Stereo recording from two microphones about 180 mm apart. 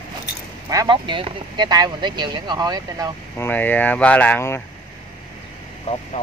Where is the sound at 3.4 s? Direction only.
10° left (ahead or behind).